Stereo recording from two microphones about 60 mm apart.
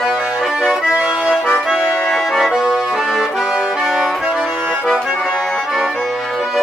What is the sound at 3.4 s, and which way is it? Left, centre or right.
Accordion, centre.